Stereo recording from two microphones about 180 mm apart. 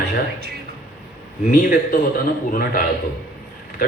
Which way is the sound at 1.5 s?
50° left (ahead or behind).